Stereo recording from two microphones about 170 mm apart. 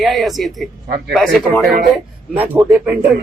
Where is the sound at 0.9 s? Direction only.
65° right (ahead or behind).